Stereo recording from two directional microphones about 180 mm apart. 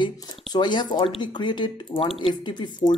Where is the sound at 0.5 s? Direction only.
25° left (ahead or behind).